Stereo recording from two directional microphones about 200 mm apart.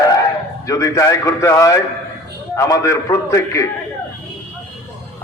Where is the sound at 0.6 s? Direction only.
15° left (ahead or behind).